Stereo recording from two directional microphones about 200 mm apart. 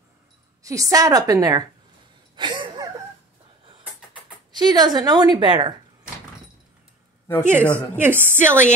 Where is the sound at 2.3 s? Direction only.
25° right (ahead or behind).